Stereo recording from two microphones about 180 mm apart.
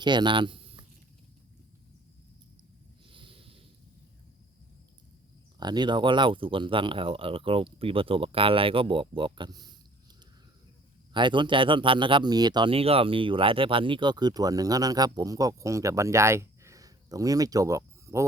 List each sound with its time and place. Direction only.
0.0 s speech: 25° right (ahead or behind)
3.1 s a sound: 30° right (ahead or behind)
5.5 s speech: 25° right (ahead or behind)
11.1 s speech: 25° right (ahead or behind)